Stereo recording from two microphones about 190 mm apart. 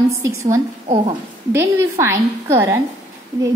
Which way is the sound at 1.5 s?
15° right (ahead or behind).